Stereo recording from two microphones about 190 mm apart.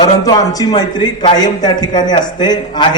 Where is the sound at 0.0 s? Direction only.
20° left (ahead or behind).